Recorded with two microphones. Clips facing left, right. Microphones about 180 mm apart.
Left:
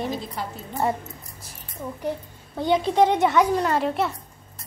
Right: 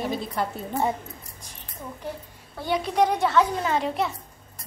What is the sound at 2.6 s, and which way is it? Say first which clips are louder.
Speech: left 4 dB; 25° left (ahead or behind).